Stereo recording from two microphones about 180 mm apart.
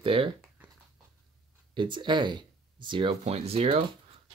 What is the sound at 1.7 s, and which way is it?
Speech, 25° right (ahead or behind).